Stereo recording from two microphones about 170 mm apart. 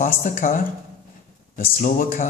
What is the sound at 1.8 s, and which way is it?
Speech, 55° left (ahead or behind).